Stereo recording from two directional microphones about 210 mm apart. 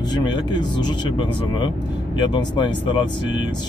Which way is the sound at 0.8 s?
20° left (ahead or behind).